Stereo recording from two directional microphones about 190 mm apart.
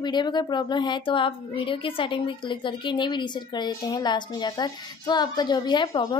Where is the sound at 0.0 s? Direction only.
25° left (ahead or behind).